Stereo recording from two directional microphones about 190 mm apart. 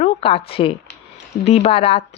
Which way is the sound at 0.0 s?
30° left (ahead or behind).